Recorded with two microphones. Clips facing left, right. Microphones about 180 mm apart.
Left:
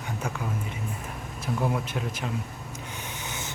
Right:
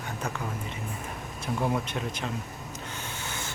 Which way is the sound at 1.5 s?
Centre (ahead or behind).